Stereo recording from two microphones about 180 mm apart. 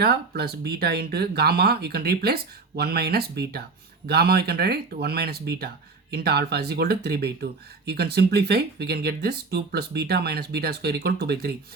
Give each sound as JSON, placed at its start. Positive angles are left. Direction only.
{"t": 0.0, "sound": "speech", "side_deg": -60}